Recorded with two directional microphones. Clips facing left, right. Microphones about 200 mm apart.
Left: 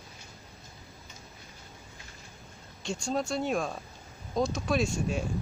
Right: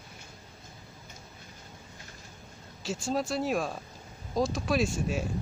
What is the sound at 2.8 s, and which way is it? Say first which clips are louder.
Speech: right 1 dB; 5° right (ahead or behind).